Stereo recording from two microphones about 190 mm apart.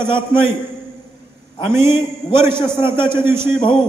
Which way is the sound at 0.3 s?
10° right (ahead or behind).